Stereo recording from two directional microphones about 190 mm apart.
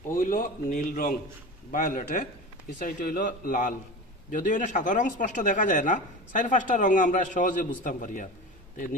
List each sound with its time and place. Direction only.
0.1 s a man's voice: 45° left (ahead or behind)